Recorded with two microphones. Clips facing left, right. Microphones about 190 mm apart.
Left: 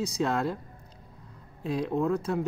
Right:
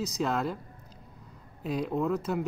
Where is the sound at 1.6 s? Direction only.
Centre (ahead or behind).